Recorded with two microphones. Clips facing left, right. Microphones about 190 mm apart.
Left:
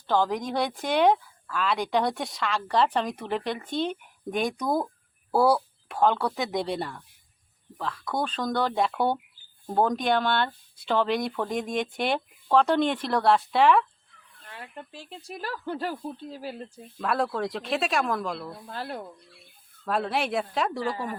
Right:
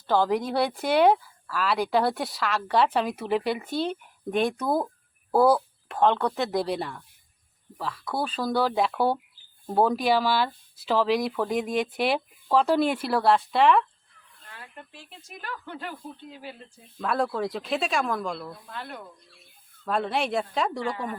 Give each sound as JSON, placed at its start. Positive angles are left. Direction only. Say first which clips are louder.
{"t": 0.1, "sound": "speech", "louder": "right 2 dB", "side_deg": -10}
{"t": 14.6, "sound": "speech", "louder": "left 4 dB", "side_deg": 30}
{"t": 17.0, "sound": "speech", "louder": "right 1 dB", "side_deg": 0}
{"t": 18.5, "sound": "speech", "louder": "left 4 dB", "side_deg": 35}
{"t": 19.8, "sound": "speech", "louder": "even", "side_deg": 0}